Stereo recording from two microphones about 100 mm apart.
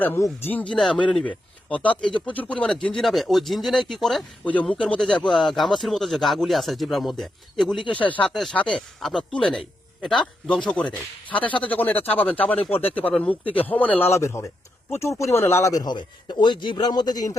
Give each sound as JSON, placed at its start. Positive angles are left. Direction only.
{"t": 0.4, "sound": "a man's voice", "side_deg": 15}
{"t": 3.0, "sound": "a man's voice", "side_deg": 0}
{"t": 7.9, "sound": "a man's voice", "side_deg": 15}
{"t": 14.1, "sound": "a man's voice", "side_deg": 30}